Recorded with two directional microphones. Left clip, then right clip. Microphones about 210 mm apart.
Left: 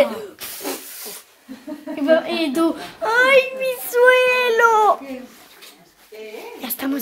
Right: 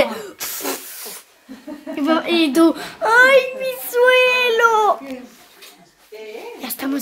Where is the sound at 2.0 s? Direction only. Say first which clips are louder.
Even; 20° right (ahead or behind).